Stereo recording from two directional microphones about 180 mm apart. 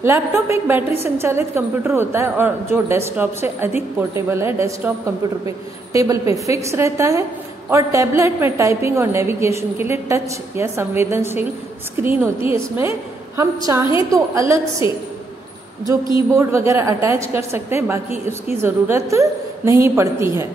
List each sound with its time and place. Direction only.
0.0 s a woman's voice: 15° right (ahead or behind)
6.4 s a woman's voice: 15° right (ahead or behind)
16.3 s a woman's voice: 15° right (ahead or behind)